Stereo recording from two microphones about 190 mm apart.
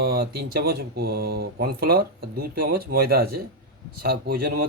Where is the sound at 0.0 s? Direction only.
55° right (ahead or behind).